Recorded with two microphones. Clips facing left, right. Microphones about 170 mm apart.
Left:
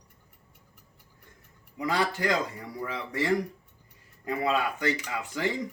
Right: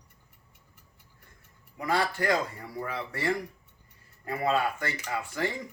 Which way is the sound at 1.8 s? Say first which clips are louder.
Even; 15° left (ahead or behind).